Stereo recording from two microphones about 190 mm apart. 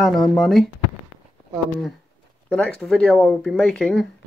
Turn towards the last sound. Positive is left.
turn(degrees=5)  # may be behind; listen again after turning